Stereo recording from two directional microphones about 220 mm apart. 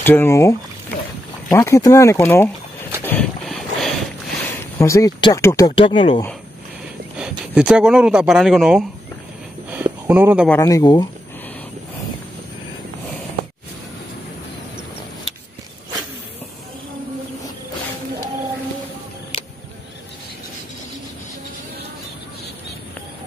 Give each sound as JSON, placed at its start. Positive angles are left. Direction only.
{"t": 0.0, "sound": "speech", "side_deg": 10}
{"t": 3.0, "sound": "boat", "side_deg": 10}
{"t": 4.7, "sound": "speech", "side_deg": 15}
{"t": 7.2, "sound": "speech", "side_deg": -5}
{"t": 10.0, "sound": "speech", "side_deg": -5}
{"t": 10.5, "sound": "speech", "side_deg": 15}